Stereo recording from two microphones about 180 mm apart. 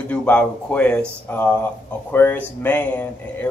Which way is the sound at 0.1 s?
5° left (ahead or behind).